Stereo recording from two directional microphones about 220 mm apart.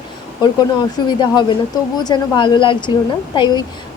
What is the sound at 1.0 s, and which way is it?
Speech, 20° left (ahead or behind).